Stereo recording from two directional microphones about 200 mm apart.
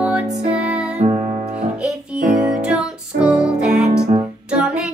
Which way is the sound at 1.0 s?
30° right (ahead or behind).